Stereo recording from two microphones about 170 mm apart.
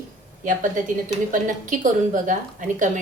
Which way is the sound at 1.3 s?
50° right (ahead or behind).